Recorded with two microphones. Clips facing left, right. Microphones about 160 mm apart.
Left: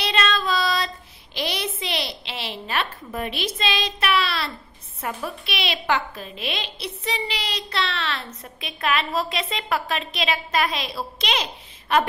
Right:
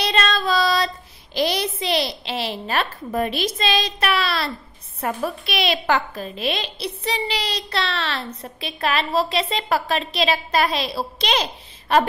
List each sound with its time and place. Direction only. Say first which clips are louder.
0.0 s child singing: right 2 dB; 40° right (ahead or behind)
5.0 s a woman's voice: right 5 dB; 45° right (ahead or behind)